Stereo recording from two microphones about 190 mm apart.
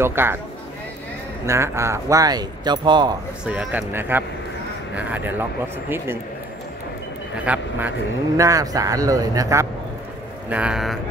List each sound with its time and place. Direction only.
0.0 s speech: 10° right (ahead or behind)
1.4 s speech: 15° right (ahead or behind)
3.4 s speech: 10° right (ahead or behind)
7.3 s speech: 5° right (ahead or behind)
8.4 s speech: 15° right (ahead or behind)
10.5 s speech: 5° right (ahead or behind)